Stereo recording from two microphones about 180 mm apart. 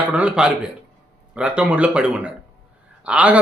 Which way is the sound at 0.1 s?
5° right (ahead or behind).